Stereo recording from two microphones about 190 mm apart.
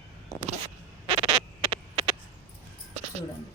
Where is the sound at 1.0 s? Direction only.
30° right (ahead or behind).